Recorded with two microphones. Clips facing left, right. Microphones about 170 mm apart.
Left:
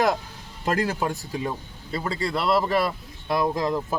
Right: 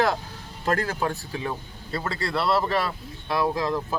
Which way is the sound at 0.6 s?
15° left (ahead or behind).